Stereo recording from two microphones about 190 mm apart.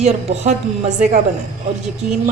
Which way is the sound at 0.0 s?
35° right (ahead or behind).